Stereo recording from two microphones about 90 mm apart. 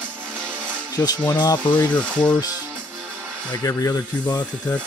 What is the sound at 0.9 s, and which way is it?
Speech, 45° left (ahead or behind).